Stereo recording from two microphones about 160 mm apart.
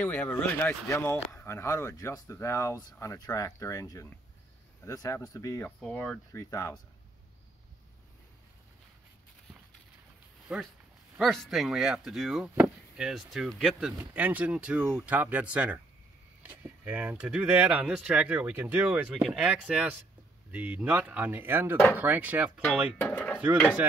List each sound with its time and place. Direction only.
0.0 s speech: 10° left (ahead or behind)
5.8 s speech: 5° left (ahead or behind)
6.3 s speech: 20° left (ahead or behind)
10.5 s speech: 10° right (ahead or behind)
22.9 s speech: 10° left (ahead or behind)